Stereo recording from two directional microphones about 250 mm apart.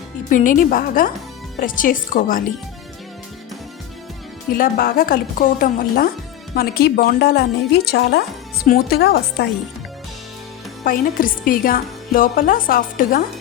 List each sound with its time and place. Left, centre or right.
0.3 s a woman's voice: left
4.5 s a woman's voice: left
10.8 s a woman's voice: left